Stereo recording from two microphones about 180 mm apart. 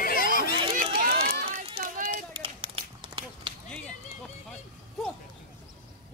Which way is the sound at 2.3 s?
30° right (ahead or behind).